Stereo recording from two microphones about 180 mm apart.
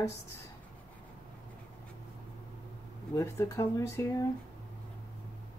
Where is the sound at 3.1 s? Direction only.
15° left (ahead or behind).